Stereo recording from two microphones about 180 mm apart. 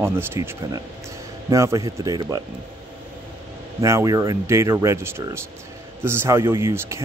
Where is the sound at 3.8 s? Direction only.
15° right (ahead or behind).